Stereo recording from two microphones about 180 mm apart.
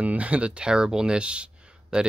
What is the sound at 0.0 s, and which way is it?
Speech, 5° right (ahead or behind).